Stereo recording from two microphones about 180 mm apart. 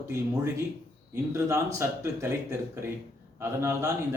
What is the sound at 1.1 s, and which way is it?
Speech, 15° right (ahead or behind).